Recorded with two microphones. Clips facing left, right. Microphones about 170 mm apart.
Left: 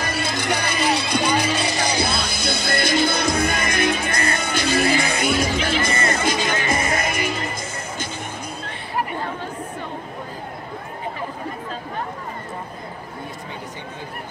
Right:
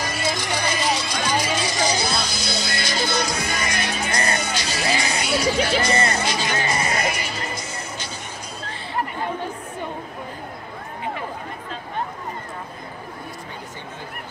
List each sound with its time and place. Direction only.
0.0 s music: 55° left (ahead or behind)